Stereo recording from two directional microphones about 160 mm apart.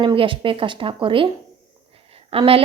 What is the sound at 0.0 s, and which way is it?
A woman's voice, 35° right (ahead or behind).